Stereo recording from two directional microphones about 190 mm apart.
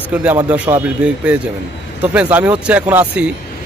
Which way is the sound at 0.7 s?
15° right (ahead or behind).